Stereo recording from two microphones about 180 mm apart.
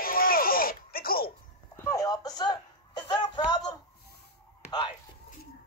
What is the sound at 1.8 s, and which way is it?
Music, 20° left (ahead or behind).